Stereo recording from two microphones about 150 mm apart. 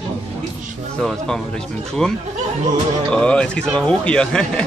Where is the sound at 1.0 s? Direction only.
Centre (ahead or behind).